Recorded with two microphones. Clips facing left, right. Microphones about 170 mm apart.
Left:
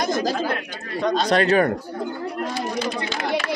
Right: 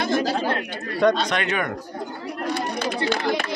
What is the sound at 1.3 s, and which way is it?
Speech, 35° left (ahead or behind).